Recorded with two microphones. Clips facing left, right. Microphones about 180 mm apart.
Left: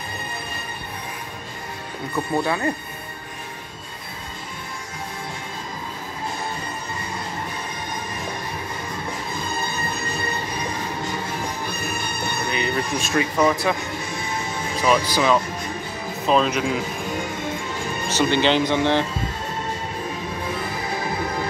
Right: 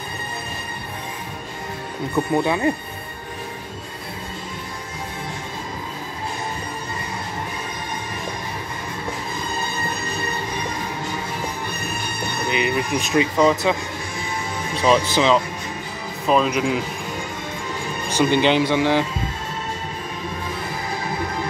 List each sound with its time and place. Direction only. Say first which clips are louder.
2.1 s speech: right 3 dB; 15° right (ahead or behind)
12.4 s speech: right 4 dB; 15° right (ahead or behind)
14.8 s speech: right 2 dB; 25° right (ahead or behind)
16.3 s speech: right 1 dB; 10° right (ahead or behind)
18.1 s speech: right 2 dB; 10° right (ahead or behind)